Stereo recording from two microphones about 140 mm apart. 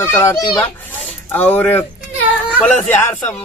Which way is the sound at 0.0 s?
20° left (ahead or behind).